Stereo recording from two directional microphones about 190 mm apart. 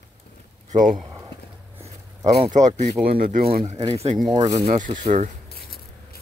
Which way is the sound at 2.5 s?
40° right (ahead or behind).